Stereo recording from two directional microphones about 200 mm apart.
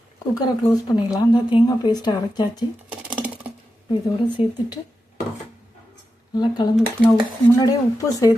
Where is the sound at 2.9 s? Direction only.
5° right (ahead or behind).